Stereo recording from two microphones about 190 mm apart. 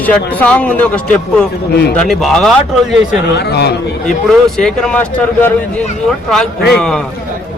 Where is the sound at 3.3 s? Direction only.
60° left (ahead or behind).